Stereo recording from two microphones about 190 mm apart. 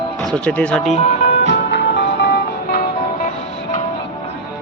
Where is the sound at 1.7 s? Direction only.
60° left (ahead or behind).